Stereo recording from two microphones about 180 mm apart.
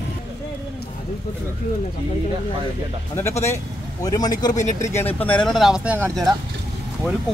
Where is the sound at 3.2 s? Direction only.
15° left (ahead or behind).